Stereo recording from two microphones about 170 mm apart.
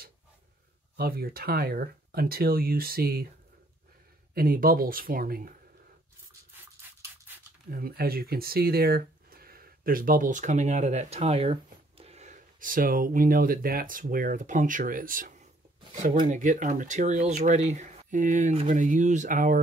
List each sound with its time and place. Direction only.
0.9 s speech: 65° right (ahead or behind)
4.3 s speech: 60° right (ahead or behind)
6.6 s dog: 10° right (ahead or behind)
7.7 s speech: 60° right (ahead or behind)